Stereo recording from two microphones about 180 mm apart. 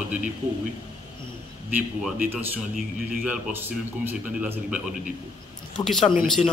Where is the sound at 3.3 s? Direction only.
10° right (ahead or behind).